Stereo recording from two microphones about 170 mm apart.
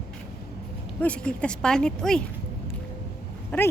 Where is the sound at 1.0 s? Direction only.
5° left (ahead or behind).